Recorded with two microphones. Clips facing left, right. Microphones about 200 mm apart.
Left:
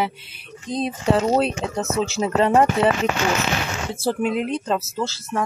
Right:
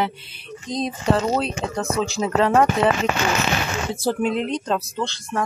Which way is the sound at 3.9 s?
Centre (ahead or behind).